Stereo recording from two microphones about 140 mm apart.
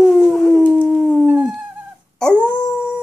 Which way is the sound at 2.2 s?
5° left (ahead or behind).